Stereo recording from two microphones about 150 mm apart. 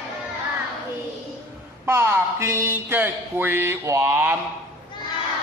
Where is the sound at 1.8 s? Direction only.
15° right (ahead or behind).